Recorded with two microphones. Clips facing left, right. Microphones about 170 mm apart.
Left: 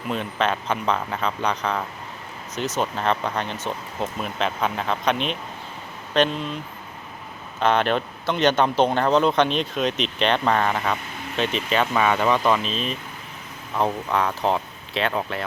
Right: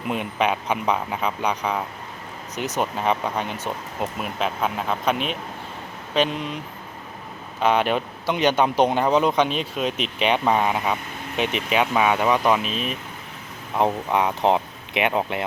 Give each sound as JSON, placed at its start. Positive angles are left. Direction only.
{"t": 0.1, "sound": "speech", "side_deg": -15}
{"t": 7.6, "sound": "speech", "side_deg": -10}